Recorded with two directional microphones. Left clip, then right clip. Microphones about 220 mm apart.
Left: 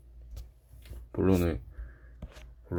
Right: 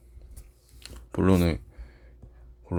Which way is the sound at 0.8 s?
20° right (ahead or behind).